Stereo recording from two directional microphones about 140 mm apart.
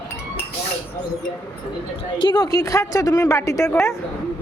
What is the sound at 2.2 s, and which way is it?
A woman's voice, 30° left (ahead or behind).